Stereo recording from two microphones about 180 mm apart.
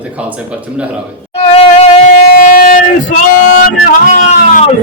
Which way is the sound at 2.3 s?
50° left (ahead or behind).